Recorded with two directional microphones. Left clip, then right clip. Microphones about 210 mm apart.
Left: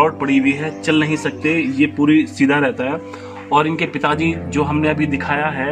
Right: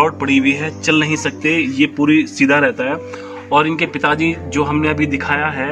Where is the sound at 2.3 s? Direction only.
20° left (ahead or behind).